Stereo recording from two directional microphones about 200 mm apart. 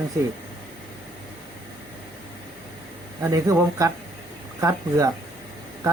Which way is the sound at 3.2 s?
15° right (ahead or behind).